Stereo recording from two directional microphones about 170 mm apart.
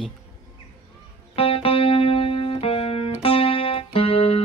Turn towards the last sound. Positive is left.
turn(degrees=35)  # may be behind; listen again after turning